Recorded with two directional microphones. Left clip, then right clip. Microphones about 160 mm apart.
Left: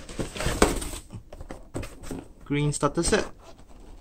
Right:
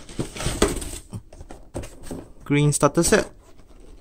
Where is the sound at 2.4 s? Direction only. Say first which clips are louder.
Right 7 dB; 40° right (ahead or behind).